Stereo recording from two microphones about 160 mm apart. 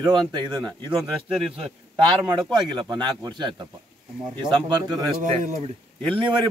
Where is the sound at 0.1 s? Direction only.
30° right (ahead or behind).